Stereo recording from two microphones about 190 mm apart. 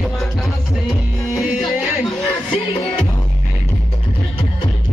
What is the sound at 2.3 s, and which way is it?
Music, 25° left (ahead or behind).